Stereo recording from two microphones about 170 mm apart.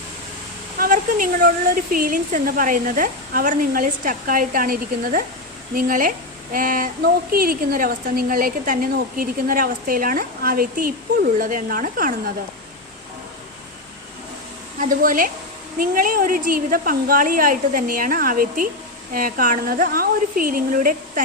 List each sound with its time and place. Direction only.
0.8 s a woman's voice: 55° right (ahead or behind)
14.8 s a woman's voice: 55° right (ahead or behind)